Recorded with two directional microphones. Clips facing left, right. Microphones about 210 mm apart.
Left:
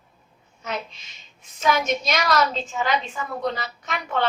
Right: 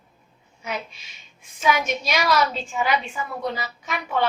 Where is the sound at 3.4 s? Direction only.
5° right (ahead or behind).